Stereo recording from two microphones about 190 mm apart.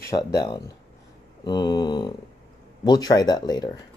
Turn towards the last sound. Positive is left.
turn(degrees=20)  # may be behind; listen again after turning